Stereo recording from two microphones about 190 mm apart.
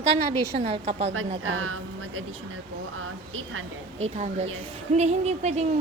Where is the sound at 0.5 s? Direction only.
35° right (ahead or behind).